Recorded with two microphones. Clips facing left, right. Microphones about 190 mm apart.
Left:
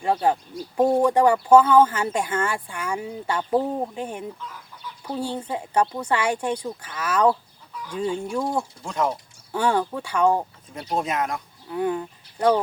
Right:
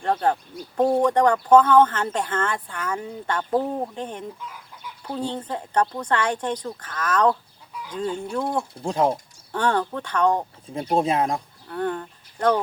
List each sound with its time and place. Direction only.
0.0 s speech: 10° left (ahead or behind)
8.8 s speech: 30° right (ahead or behind)
9.5 s speech: 10° left (ahead or behind)
10.9 s speech: 30° right (ahead or behind)
11.7 s speech: 10° left (ahead or behind)